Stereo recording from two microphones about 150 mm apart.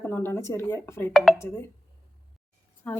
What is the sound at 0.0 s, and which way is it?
Speech, 15° left (ahead or behind).